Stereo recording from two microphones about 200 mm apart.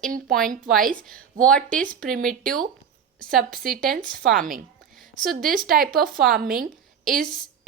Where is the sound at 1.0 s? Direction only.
5° left (ahead or behind).